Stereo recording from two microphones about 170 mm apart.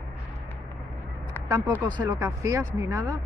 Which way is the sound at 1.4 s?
25° right (ahead or behind).